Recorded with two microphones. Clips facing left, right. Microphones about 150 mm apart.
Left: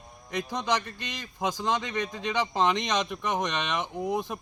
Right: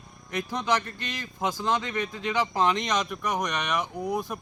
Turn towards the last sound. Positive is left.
turn(degrees=20)  # may be behind; listen again after turning